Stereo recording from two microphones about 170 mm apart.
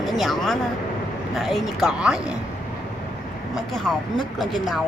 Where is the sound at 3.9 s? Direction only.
Centre (ahead or behind).